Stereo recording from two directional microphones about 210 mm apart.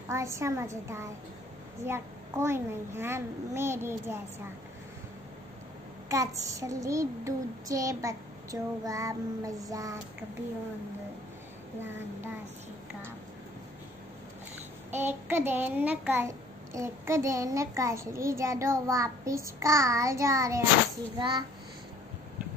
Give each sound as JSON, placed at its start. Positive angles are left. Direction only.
{"t": 0.1, "sound": "a child's voice", "side_deg": -15}
{"t": 6.0, "sound": "a child's voice", "side_deg": -15}
{"t": 14.9, "sound": "a child's voice", "side_deg": -10}